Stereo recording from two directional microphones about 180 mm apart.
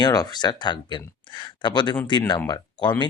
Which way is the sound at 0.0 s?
20° left (ahead or behind).